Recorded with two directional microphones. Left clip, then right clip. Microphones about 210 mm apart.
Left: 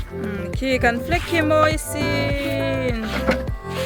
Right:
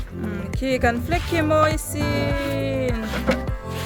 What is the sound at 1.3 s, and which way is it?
Speech, 5° left (ahead or behind).